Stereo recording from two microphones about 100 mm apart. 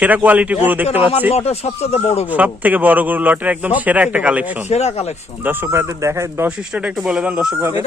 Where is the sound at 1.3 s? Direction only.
90° left.